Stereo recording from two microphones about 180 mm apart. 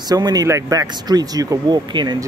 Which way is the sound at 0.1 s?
20° right (ahead or behind).